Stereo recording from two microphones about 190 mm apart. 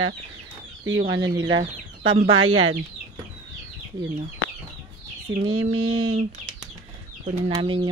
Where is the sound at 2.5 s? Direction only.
90° right.